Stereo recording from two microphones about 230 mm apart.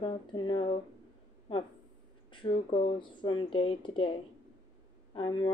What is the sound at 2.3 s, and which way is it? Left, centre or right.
Speech, left.